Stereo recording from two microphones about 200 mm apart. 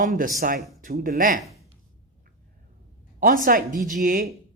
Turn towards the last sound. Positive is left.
turn(degrees=-45)  # may be behind; listen again after turning